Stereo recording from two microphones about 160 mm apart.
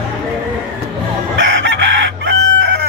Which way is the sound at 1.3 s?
90° right.